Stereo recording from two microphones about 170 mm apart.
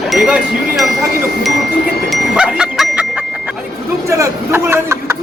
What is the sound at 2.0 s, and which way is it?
Music, 5° right (ahead or behind).